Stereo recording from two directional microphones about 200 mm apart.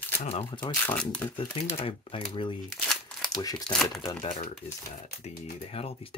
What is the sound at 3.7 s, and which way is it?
Speech, centre (ahead or behind).